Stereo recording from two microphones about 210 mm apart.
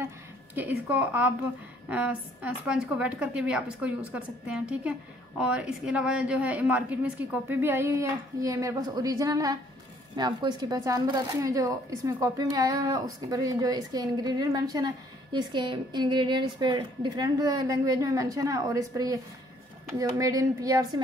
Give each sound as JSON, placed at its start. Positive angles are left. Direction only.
{"t": 0.6, "sound": "a woman's voice", "side_deg": -5}